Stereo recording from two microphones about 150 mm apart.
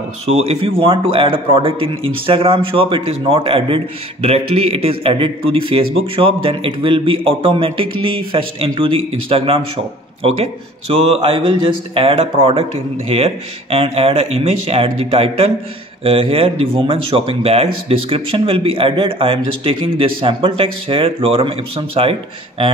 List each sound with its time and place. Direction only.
0.3 s a man's voice: 45° right (ahead or behind)